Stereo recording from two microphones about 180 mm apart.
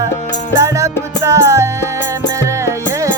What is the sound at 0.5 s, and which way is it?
Music, 15° right (ahead or behind).